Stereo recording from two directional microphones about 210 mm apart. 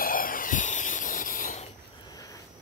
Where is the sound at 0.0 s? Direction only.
40° left (ahead or behind).